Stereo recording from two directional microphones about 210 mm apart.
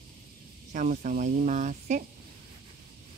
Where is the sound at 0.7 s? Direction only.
40° right (ahead or behind).